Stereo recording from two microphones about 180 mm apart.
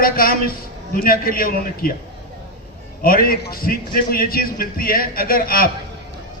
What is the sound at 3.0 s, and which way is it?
A man's voice, 55° left (ahead or behind).